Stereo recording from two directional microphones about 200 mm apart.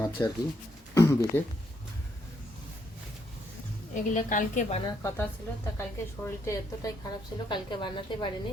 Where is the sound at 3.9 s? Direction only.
40° left (ahead or behind).